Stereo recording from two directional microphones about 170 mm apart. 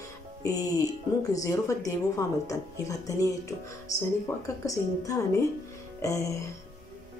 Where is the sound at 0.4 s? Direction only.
20° left (ahead or behind).